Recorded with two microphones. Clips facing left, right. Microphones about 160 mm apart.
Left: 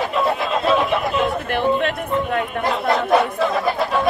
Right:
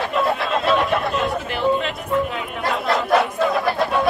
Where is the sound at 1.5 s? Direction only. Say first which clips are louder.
Left 2 dB; 55° left (ahead or behind).